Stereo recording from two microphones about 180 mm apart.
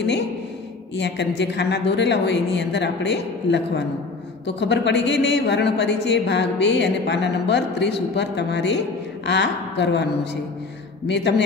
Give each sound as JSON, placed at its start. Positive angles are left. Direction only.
{"t": 0.9, "sound": "a woman's voice", "side_deg": 70}
{"t": 11.1, "sound": "a woman's voice", "side_deg": 75}